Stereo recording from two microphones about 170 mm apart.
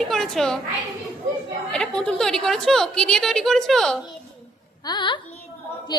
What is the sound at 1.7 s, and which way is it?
A woman's voice, 5° left (ahead or behind).